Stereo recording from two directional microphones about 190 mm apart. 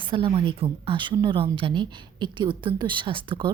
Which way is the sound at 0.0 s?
25° right (ahead or behind).